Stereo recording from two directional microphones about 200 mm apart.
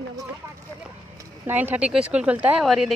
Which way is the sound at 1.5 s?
10° right (ahead or behind).